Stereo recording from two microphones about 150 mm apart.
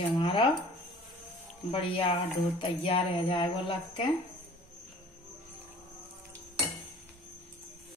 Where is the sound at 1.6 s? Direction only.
40° left (ahead or behind).